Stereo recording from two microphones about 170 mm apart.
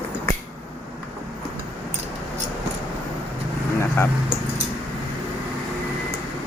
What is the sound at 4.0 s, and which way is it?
Speech, 15° left (ahead or behind).